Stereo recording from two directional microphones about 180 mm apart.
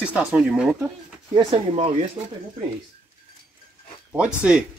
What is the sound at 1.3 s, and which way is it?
Speech, 30° right (ahead or behind).